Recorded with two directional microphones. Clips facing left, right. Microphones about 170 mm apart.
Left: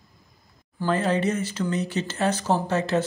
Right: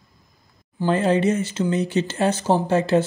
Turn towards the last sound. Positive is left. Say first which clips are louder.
# right 5 dB
turn(degrees=-30)  # may be behind; listen again after turning